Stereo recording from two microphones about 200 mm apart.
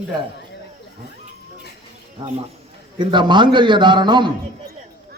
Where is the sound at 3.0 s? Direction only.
25° right (ahead or behind).